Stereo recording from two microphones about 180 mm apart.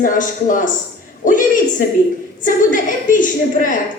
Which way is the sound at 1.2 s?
45° left (ahead or behind).